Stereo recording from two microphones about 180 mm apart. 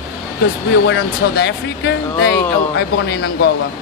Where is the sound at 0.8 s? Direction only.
70° left (ahead or behind).